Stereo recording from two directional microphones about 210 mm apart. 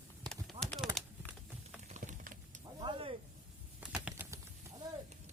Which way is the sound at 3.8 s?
5° right (ahead or behind).